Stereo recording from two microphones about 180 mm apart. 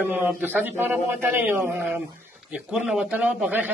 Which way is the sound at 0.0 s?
10° right (ahead or behind).